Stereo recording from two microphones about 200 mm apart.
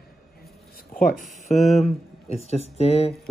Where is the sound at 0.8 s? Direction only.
45° left (ahead or behind).